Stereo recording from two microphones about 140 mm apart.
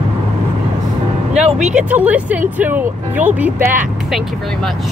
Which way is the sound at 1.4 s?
5° right (ahead or behind).